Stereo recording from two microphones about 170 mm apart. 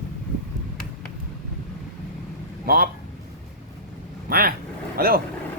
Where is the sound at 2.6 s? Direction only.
60° right (ahead or behind).